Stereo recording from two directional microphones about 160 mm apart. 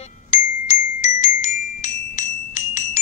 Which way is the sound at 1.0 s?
50° left (ahead or behind).